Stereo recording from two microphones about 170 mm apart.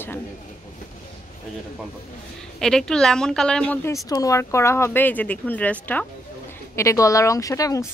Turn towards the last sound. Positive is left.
turn(degrees=20)  # may be behind; listen again after turning